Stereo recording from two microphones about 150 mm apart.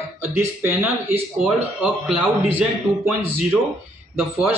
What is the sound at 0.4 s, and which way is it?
Speech, 15° right (ahead or behind).